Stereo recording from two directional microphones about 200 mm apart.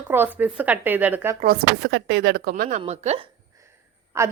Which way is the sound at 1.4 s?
55° right (ahead or behind).